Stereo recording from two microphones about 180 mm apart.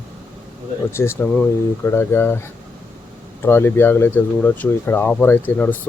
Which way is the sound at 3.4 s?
10° left (ahead or behind).